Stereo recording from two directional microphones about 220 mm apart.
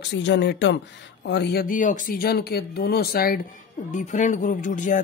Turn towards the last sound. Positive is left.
turn(degrees=35)  # may be behind; listen again after turning